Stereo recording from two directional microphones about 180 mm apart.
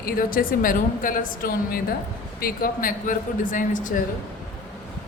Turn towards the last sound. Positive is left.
turn(degrees=45)  # may be behind; listen again after turning